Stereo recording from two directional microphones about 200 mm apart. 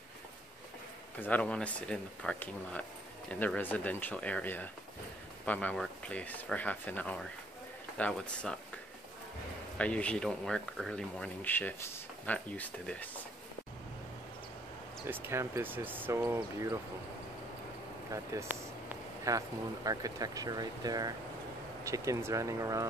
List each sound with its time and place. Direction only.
1.2 s speech: 5° left (ahead or behind)
9.8 s speech: 5° left (ahead or behind)
15.0 s speech: 10° right (ahead or behind)
18.1 s speech: 15° right (ahead or behind)